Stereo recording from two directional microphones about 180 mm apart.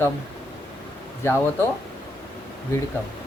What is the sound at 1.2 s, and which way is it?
Speech, 15° left (ahead or behind).